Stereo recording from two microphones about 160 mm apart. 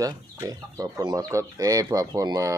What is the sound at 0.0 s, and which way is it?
Speech, 20° right (ahead or behind).